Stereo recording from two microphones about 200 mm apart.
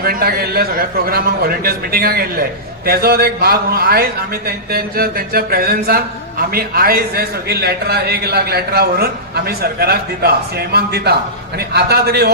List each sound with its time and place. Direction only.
0.0 s a man's voice: 50° right (ahead or behind)